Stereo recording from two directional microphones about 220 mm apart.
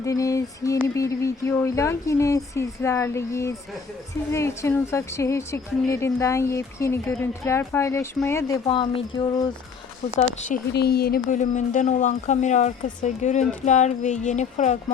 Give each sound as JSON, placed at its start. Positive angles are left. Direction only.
{"t": 0.0, "sound": "a woman's voice", "side_deg": 15}
{"t": 10.7, "sound": "speech", "side_deg": 45}